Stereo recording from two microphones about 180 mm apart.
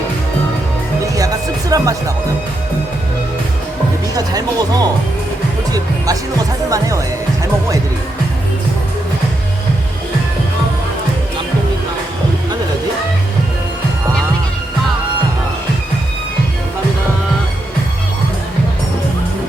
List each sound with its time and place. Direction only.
1.1 s music: 20° right (ahead or behind)
4.1 s speech: 20° right (ahead or behind)